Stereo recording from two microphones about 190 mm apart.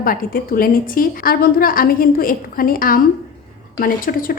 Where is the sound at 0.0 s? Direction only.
50° left (ahead or behind).